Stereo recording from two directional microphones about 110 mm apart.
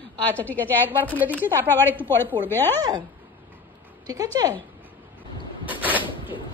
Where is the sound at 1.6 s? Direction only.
20° left (ahead or behind).